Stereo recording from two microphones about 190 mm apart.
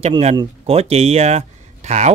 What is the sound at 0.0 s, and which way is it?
Speech, 30° right (ahead or behind).